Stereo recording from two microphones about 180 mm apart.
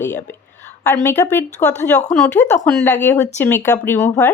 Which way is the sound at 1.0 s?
15° left (ahead or behind).